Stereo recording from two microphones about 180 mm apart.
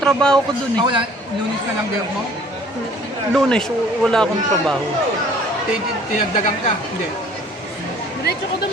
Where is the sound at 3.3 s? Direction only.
5° left (ahead or behind).